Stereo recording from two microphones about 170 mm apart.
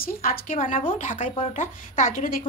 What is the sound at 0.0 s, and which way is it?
A woman's voice, 60° left (ahead or behind).